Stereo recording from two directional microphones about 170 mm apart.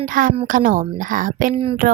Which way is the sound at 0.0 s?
55° right (ahead or behind).